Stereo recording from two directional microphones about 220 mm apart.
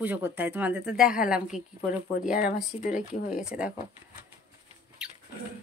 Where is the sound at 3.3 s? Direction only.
5° right (ahead or behind).